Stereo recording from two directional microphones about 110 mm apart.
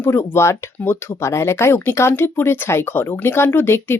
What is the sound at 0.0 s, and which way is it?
Speech, 20° left (ahead or behind).